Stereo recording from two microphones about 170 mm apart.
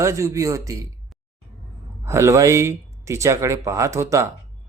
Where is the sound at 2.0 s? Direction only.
15° right (ahead or behind).